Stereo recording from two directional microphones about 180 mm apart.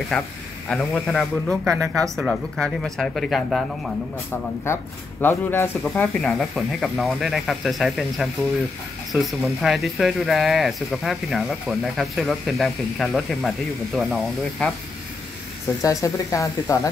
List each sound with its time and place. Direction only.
0.1 s speech: 5° left (ahead or behind)
5.2 s speech: 10° left (ahead or behind)
15.8 s speech: 20° left (ahead or behind)